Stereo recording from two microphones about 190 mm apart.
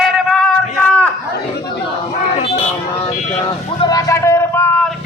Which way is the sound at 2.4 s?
30° left (ahead or behind).